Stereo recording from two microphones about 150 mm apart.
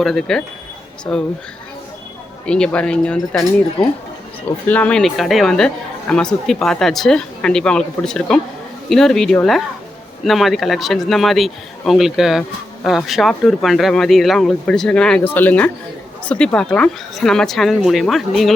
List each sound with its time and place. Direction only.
0.0 s speech: centre (ahead or behind)
2.5 s speech: 5° left (ahead or behind)
4.7 s speech: 10° left (ahead or behind)